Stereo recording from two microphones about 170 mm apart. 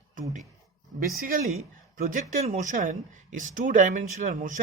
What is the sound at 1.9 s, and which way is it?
Speech, 50° right (ahead or behind).